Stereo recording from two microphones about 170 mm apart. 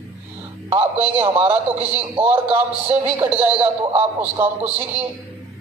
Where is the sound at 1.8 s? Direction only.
35° right (ahead or behind).